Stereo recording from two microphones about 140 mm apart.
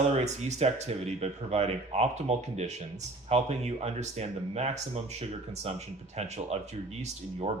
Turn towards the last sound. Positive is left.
turn(degrees=-50)  # may be behind; listen again after turning